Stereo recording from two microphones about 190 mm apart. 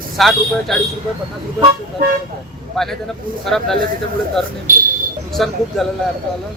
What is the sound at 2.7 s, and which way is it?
Speech, centre (ahead or behind).